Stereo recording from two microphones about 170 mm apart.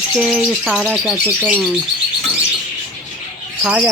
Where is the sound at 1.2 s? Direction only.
10° right (ahead or behind).